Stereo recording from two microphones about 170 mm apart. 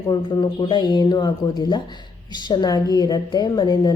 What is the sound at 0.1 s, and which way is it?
A woman's voice, 25° left (ahead or behind).